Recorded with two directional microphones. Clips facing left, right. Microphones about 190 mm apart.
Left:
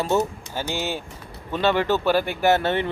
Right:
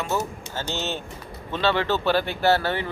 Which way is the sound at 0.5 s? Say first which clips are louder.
Left 2 dB; 10° left (ahead or behind).